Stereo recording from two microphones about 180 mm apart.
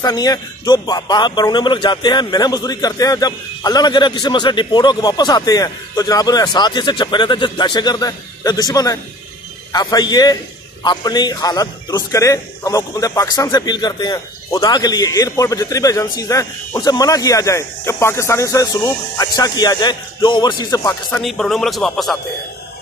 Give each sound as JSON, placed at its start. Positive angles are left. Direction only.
{"t": 0.0, "sound": "a man's voice", "side_deg": 20}
{"t": 21.2, "sound": "speech", "side_deg": 0}